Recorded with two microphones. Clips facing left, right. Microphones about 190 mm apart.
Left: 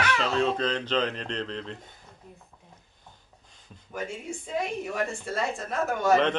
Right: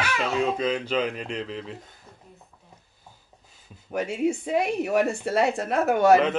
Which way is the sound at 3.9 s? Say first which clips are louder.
Right 10 dB; 70° right (ahead or behind).